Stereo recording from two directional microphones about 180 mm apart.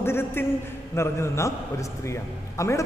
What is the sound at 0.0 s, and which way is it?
A man's voice, 15° left (ahead or behind).